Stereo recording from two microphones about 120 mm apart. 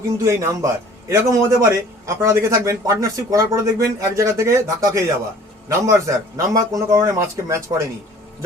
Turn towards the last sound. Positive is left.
turn(degrees=-25)  # may be behind; listen again after turning